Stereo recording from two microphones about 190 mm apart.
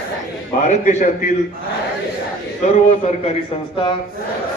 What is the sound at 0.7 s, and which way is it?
Speech, 40° left (ahead or behind).